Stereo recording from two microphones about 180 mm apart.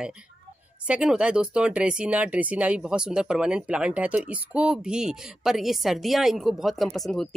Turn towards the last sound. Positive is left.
turn(degrees=0)  # may be behind; listen again after turning